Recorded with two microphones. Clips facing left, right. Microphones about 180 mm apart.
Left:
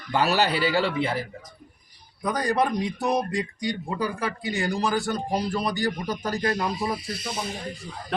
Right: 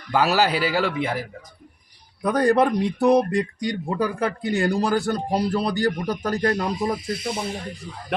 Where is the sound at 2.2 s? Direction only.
60° right (ahead or behind).